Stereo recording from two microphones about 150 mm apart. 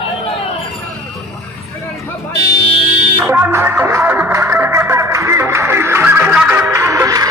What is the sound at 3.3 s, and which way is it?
Music, 15° right (ahead or behind).